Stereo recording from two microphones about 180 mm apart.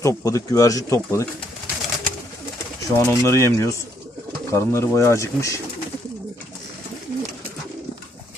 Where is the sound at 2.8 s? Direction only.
15° left (ahead or behind).